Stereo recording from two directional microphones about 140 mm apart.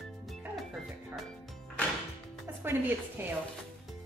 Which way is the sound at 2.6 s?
15° right (ahead or behind).